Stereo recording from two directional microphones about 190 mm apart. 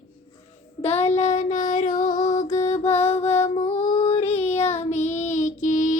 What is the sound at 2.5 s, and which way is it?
Music, 35° left (ahead or behind).